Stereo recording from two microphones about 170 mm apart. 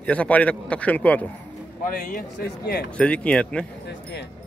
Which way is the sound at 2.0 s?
60° left (ahead or behind).